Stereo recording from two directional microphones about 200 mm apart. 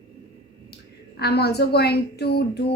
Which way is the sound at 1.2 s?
55° left (ahead or behind).